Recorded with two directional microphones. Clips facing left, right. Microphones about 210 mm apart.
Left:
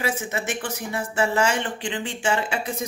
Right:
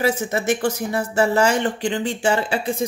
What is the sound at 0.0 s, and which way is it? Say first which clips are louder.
Speech: right 6 dB; 40° right (ahead or behind).